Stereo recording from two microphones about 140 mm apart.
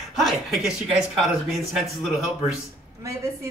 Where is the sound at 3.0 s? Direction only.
20° right (ahead or behind).